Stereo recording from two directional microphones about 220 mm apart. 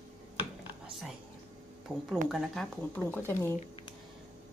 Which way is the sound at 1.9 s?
5° right (ahead or behind).